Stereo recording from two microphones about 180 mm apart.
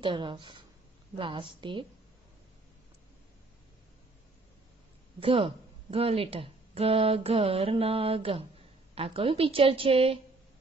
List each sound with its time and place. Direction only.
0.0 s a woman's voice: 25° right (ahead or behind)
5.2 s speech: 30° right (ahead or behind)